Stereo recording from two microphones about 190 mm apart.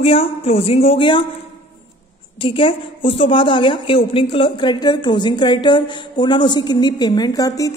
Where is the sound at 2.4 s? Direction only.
30° left (ahead or behind).